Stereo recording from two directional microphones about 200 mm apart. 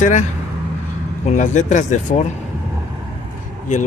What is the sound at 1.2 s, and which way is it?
Speech, 35° left (ahead or behind).